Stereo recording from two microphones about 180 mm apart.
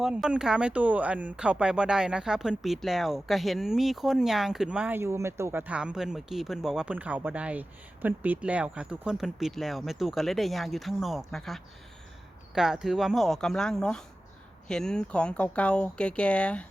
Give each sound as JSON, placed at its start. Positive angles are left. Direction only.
{"t": 0.0, "sound": "speech", "side_deg": -5}